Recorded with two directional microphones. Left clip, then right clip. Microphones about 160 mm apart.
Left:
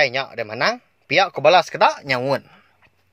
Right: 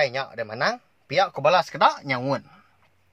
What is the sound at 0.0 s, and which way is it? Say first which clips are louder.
Speech: left 5 dB; 20° left (ahead or behind).